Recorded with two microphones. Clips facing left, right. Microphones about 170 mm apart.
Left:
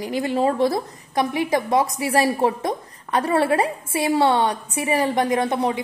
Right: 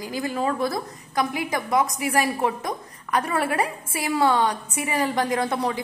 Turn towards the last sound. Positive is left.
turn(degrees=25)  # may be behind; listen again after turning